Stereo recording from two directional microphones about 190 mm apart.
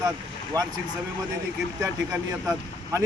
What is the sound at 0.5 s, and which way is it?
Speech, 20° right (ahead or behind).